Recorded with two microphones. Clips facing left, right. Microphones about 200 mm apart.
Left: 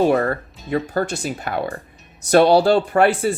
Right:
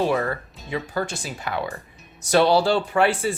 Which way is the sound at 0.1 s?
45° left (ahead or behind).